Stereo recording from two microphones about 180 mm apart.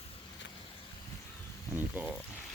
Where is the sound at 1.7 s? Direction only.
10° right (ahead or behind).